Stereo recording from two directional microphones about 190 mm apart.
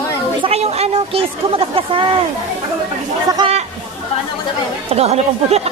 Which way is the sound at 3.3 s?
20° right (ahead or behind).